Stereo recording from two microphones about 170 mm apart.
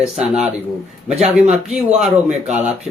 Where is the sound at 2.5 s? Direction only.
40° right (ahead or behind).